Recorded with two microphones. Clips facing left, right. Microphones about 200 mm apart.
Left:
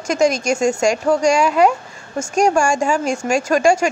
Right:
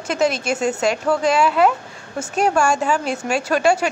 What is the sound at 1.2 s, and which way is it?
Speech, 45° left (ahead or behind).